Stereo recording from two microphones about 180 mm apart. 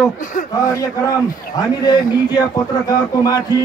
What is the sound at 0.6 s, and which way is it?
A man's voice, 20° left (ahead or behind).